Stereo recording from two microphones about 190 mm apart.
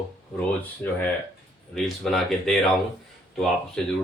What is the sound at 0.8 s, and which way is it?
A man's voice, 10° left (ahead or behind).